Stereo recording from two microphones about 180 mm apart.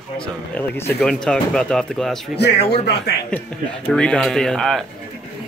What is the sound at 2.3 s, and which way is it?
Speech, 70° left (ahead or behind).